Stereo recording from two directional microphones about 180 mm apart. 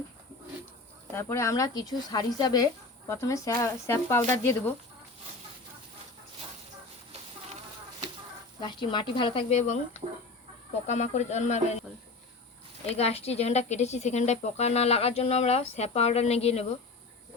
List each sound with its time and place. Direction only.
1.1 s speech: 15° left (ahead or behind)
8.6 s speech: 25° left (ahead or behind)
12.9 s speech: 35° left (ahead or behind)